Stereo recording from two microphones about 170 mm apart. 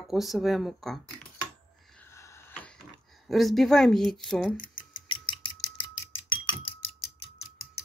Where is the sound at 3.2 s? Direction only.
Centre (ahead or behind).